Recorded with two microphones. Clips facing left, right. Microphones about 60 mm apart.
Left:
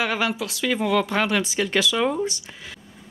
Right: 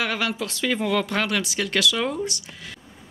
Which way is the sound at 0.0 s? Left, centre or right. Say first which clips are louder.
Left 2 dB; centre.